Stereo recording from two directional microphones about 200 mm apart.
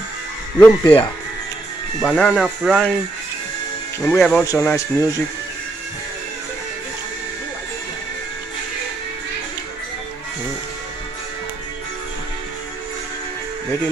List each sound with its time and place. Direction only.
0.6 s speech: 25° left (ahead or behind)
2.0 s speech: 5° left (ahead or behind)
4.0 s speech: 10° left (ahead or behind)